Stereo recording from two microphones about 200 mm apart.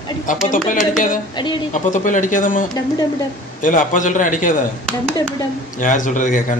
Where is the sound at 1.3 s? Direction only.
25° left (ahead or behind).